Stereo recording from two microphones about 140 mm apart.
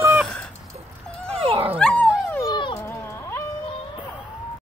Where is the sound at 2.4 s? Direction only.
30° left (ahead or behind).